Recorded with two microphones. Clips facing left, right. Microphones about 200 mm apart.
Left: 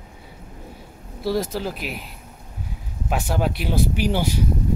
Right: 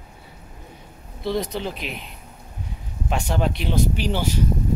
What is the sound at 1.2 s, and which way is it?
Speech, 5° left (ahead or behind).